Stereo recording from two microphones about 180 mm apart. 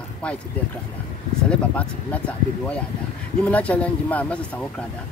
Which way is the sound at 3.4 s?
10° left (ahead or behind).